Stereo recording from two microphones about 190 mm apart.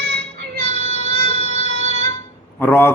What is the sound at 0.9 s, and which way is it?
Music, 30° left (ahead or behind).